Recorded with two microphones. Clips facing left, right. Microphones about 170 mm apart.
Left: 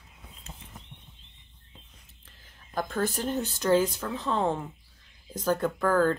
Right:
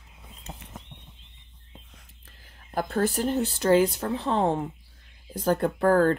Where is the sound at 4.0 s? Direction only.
35° right (ahead or behind).